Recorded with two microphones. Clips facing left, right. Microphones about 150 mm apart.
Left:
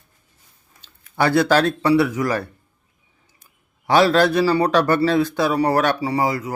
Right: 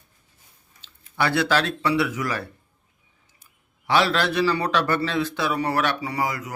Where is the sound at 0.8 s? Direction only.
45° left (ahead or behind).